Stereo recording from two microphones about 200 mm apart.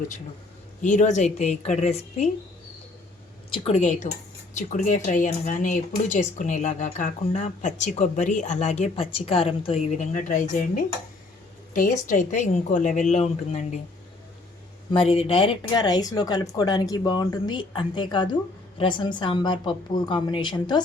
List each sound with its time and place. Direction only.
0.8 s speech: 40° left (ahead or behind)
3.7 s speech: 35° left (ahead or behind)
14.9 s speech: 30° left (ahead or behind)